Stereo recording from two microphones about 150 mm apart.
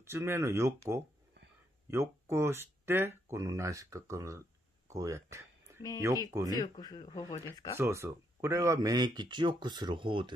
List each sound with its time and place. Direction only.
0.0 s speech: 15° right (ahead or behind)
6.5 s speech: 25° left (ahead or behind)
7.7 s speech: 15° right (ahead or behind); by 10.3 s 35° right (ahead or behind)